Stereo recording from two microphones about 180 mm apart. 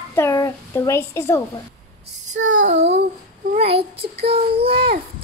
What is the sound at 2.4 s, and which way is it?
Child singing, 90° right.